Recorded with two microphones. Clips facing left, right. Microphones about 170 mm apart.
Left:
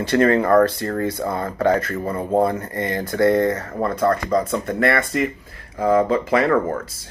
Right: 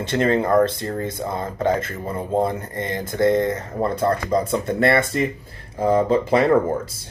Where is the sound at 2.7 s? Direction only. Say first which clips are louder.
Left 2 dB; 55° left (ahead or behind).